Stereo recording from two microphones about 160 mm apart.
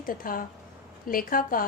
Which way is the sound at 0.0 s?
60° left (ahead or behind).